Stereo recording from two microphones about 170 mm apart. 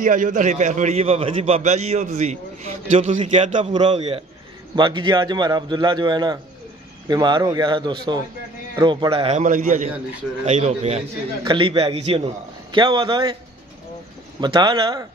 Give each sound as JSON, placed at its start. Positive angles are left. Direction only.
{"t": 0.0, "sound": "a man's voice", "side_deg": -50}
{"t": 4.7, "sound": "a man's voice", "side_deg": -25}
{"t": 9.4, "sound": "a man's voice", "side_deg": -50}
{"t": 14.4, "sound": "a man's voice", "side_deg": -25}